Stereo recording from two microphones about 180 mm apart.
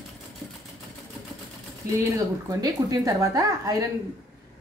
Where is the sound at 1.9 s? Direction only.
20° right (ahead or behind).